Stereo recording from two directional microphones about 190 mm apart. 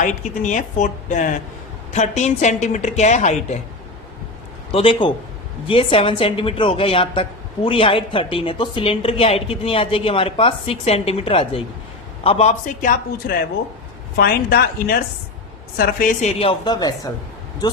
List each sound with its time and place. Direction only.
0.0 s a woman's voice: 40° left (ahead or behind)
4.7 s a woman's voice: 30° left (ahead or behind); by 16.3 s 45° left (ahead or behind)
16.4 s a woman's voice: 25° left (ahead or behind)